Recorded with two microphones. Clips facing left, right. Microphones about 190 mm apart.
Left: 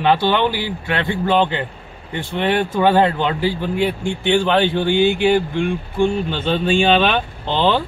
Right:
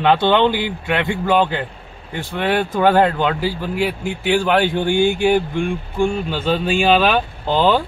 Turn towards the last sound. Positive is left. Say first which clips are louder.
# right 2 dB
turn(degrees=-10)  # may be behind; listen again after turning